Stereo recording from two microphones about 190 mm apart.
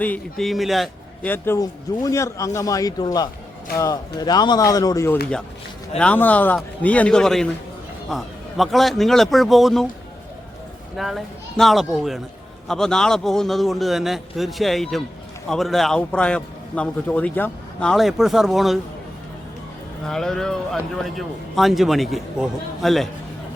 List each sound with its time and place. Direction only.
0.0 s a man's voice: 5° left (ahead or behind)
1.3 s a man's voice: 15° left (ahead or behind)
10.9 s a man's voice: centre (ahead or behind)
20.1 s a man's voice: centre (ahead or behind)